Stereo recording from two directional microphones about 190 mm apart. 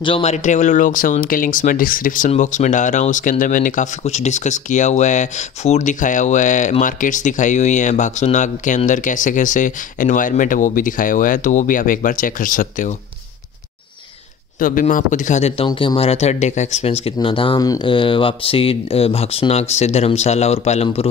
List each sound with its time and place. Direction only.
0.0 s speech: 30° left (ahead or behind)
14.6 s speech: 45° left (ahead or behind)